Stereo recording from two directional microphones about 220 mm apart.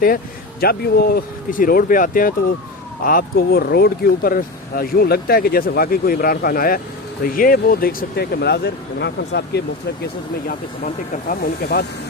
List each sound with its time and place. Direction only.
0.6 s speech: 45° left (ahead or behind)
10.8 s speech: 45° left (ahead or behind)